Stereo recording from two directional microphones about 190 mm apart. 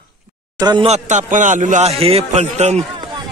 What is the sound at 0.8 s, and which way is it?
A man's voice, 35° right (ahead or behind).